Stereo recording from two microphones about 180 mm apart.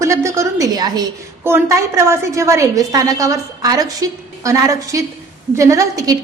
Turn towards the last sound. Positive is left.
turn(degrees=-20)  # may be behind; listen again after turning